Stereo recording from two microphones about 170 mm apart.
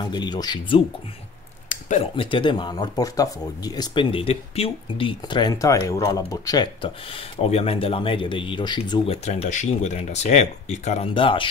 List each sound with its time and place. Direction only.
0.0 s speech: 25° left (ahead or behind)
1.7 s a sound: 45° left (ahead or behind)
2.1 s speech: 30° left (ahead or behind)